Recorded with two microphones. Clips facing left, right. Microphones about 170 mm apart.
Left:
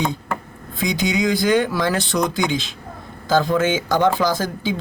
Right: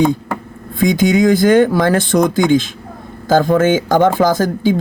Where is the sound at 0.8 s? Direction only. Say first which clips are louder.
Right 8 dB; 50° right (ahead or behind).